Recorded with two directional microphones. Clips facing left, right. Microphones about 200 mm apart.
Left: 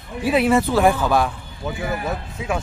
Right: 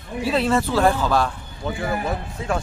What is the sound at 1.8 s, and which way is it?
Speech, 5° left (ahead or behind).